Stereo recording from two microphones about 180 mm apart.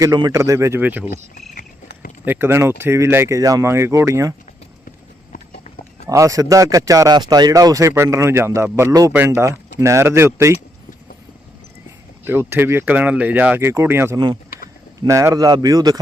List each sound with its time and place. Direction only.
0.0 s speech: 20° right (ahead or behind)
1.1 s a sound: 55° left (ahead or behind)
2.2 s speech: 10° right (ahead or behind)
5.3 s clip-clop: 55° left (ahead or behind)
6.1 s speech: 20° right (ahead or behind)
12.2 s a man's voice: 10° right (ahead or behind)